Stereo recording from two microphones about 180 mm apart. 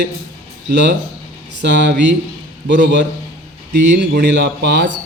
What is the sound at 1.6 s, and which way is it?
A man's voice, 75° right (ahead or behind).